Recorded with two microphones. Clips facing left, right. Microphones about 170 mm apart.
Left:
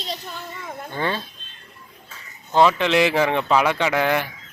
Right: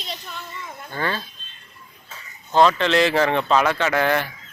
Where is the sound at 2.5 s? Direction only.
10° left (ahead or behind).